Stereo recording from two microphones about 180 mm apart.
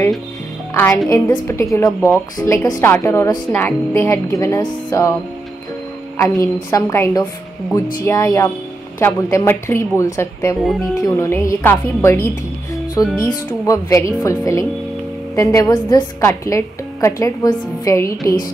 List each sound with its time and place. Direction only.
0.7 s a woman's voice: 15° left (ahead or behind)
6.1 s a woman's voice: 15° left (ahead or behind)